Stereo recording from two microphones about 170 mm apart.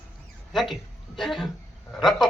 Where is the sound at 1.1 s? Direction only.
Centre (ahead or behind).